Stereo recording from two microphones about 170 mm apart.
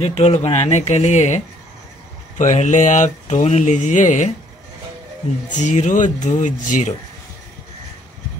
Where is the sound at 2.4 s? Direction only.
45° left (ahead or behind).